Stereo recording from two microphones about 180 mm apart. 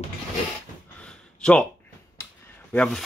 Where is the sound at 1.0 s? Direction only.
5° left (ahead or behind).